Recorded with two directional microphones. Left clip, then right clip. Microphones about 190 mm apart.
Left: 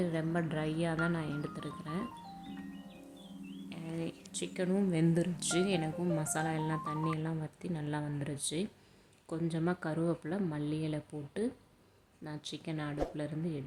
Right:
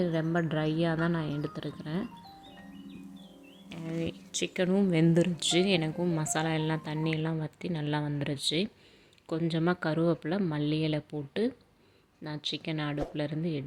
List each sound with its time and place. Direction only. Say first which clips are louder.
0.0 s speech: right 5 dB; 25° right (ahead or behind)
3.7 s speech: right 6 dB; 20° right (ahead or behind)